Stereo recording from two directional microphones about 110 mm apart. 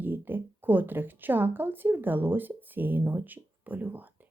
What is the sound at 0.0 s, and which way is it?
A woman's voice, 15° right (ahead or behind).